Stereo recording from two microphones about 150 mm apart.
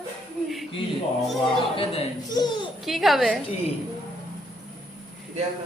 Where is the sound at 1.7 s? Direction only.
40° left (ahead or behind).